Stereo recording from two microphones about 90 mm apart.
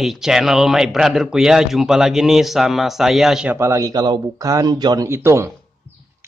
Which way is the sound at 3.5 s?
35° right (ahead or behind).